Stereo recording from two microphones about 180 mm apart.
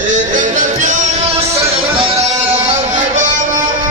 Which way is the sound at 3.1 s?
45° right (ahead or behind).